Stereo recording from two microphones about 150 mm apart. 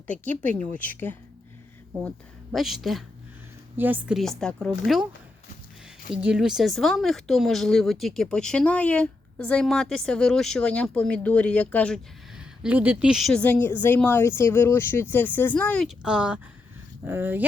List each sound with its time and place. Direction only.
0.5 s a woman's voice: 10° left (ahead or behind)
2.0 s speech: centre (ahead or behind)
3.8 s a woman's voice: 10° right (ahead or behind)
4.2 s speech: 5° left (ahead or behind)
6.2 s speech: 5° right (ahead or behind)
12.4 s a woman's voice: 10° right (ahead or behind); by 15.9 s 10° left (ahead or behind)
16.0 s a woman's voice: 5° right (ahead or behind)